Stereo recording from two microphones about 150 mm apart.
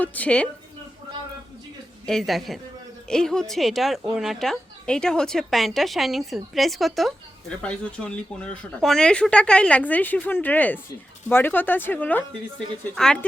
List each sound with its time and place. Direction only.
0.0 s speech: 10° left (ahead or behind)
2.0 s a woman's voice: centre (ahead or behind)